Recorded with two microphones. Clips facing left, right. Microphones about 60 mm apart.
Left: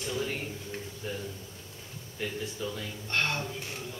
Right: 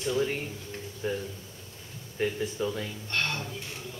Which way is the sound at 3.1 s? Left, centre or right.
Centre.